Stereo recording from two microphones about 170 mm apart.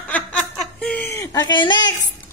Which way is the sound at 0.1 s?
5° left (ahead or behind).